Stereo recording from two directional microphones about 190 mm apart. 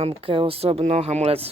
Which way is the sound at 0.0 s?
30° right (ahead or behind).